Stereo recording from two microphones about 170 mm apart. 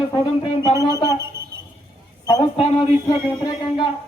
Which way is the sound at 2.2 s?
25° left (ahead or behind).